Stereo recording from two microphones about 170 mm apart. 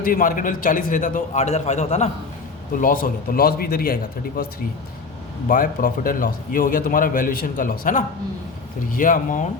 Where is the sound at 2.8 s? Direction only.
55° left (ahead or behind).